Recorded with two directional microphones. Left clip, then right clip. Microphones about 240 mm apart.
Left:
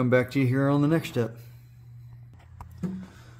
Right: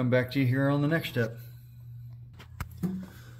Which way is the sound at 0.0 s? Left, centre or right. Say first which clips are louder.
Left 4 dB; left.